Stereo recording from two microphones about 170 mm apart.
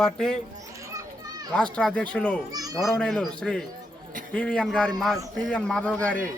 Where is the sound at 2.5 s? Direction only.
20° right (ahead or behind).